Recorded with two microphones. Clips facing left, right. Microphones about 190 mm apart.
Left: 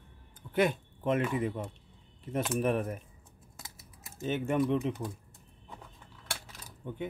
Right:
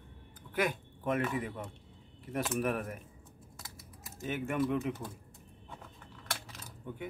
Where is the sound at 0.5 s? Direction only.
25° left (ahead or behind).